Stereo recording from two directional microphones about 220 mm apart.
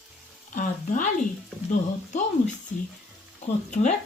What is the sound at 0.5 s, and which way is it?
Speech, 35° left (ahead or behind).